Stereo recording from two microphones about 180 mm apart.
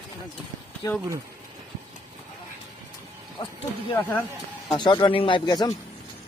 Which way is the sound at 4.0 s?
10° left (ahead or behind).